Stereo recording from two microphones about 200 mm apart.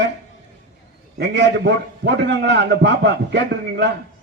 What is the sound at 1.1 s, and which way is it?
A man's voice, 60° right (ahead or behind).